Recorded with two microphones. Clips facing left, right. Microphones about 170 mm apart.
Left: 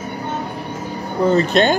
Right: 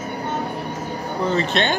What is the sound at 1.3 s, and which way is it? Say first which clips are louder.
Speech: left 7 dB; 40° left (ahead or behind).